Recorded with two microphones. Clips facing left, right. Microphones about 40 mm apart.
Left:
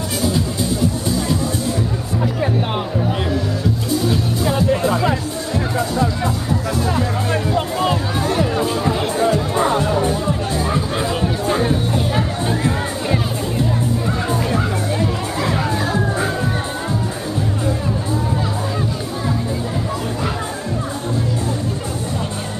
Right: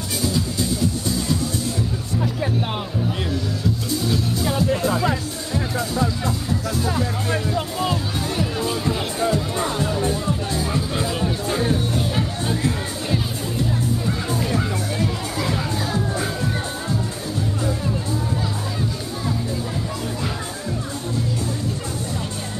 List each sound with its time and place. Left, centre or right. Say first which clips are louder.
4.1 s music: left 3 dB; left
14.0 s music: left 4 dB; left